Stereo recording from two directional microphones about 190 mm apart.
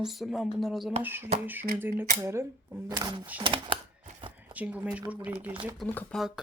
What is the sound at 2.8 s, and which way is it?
Speech, 20° right (ahead or behind).